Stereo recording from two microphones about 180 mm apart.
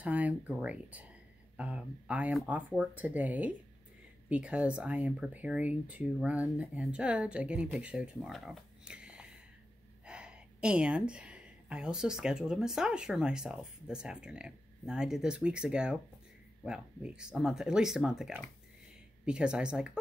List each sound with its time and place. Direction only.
0.0 s speech: 10° right (ahead or behind)